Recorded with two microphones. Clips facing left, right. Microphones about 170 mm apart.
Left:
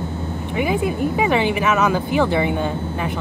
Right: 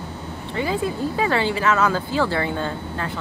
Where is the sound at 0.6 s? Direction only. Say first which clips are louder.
Left 3 dB; 15° left (ahead or behind).